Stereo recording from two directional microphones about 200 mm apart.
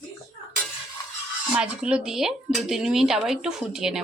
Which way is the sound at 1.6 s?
5° right (ahead or behind).